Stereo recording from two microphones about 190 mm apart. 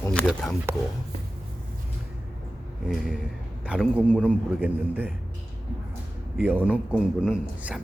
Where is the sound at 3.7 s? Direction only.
5° right (ahead or behind).